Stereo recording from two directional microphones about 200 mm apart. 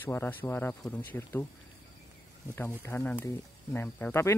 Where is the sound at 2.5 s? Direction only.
10° left (ahead or behind).